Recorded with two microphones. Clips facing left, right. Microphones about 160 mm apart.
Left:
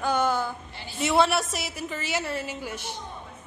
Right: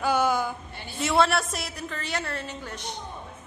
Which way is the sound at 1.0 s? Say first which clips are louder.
Left 1 dB; centre (ahead or behind).